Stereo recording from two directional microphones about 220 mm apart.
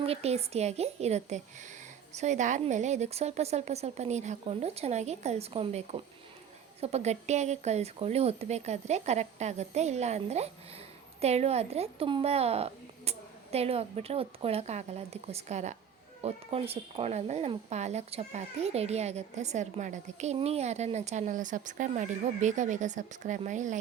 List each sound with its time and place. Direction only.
0.0 s a woman's voice: 30° right (ahead or behind)